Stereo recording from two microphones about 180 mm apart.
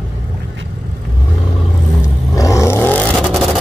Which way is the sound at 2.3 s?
20° left (ahead or behind).